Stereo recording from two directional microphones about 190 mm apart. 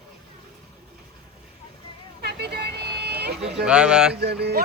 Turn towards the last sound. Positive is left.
turn(degrees=-60)  # may be behind; listen again after turning